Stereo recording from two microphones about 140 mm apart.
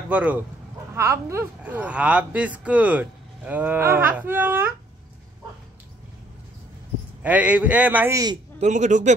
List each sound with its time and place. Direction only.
0.1 s speech: 10° right (ahead or behind)
0.9 s speech: 20° right (ahead or behind)
7.2 s speech: 10° right (ahead or behind)
8.1 s a man's voice: 25° right (ahead or behind)
8.5 s a man's voice: 60° right (ahead or behind)